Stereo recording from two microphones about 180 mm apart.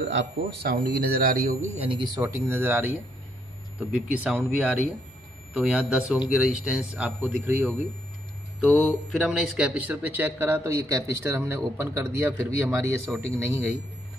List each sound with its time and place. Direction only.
0.1 s speech: 80° right; by 7.8 s 10° right (ahead or behind)
8.6 s speech: centre (ahead or behind)